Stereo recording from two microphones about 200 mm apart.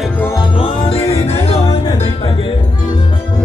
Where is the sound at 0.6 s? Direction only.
30° left (ahead or behind).